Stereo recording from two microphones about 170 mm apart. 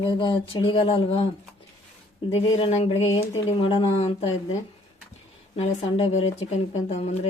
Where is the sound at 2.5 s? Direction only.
35° left (ahead or behind).